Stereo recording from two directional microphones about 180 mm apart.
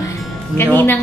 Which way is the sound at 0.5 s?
10° left (ahead or behind).